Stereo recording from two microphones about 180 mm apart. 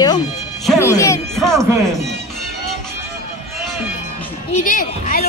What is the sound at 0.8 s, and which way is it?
Music, 15° left (ahead or behind).